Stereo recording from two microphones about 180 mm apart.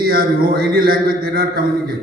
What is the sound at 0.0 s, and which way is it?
A man's voice, 55° right (ahead or behind).